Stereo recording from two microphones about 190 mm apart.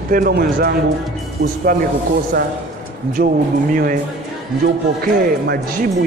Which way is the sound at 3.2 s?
55° right (ahead or behind).